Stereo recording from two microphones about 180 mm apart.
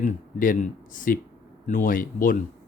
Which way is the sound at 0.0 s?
50° left (ahead or behind).